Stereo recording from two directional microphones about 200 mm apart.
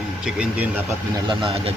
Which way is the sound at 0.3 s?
5° right (ahead or behind).